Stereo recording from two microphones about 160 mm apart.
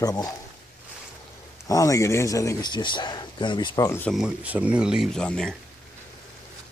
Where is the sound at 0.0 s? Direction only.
25° left (ahead or behind).